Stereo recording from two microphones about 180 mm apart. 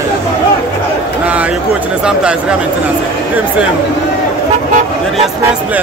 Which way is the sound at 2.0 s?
5° right (ahead or behind).